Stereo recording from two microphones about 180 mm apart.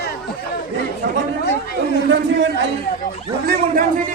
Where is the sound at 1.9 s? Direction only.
80° right.